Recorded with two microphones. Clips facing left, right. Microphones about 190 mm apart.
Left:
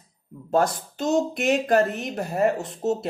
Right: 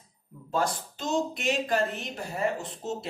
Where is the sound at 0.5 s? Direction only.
45° left (ahead or behind).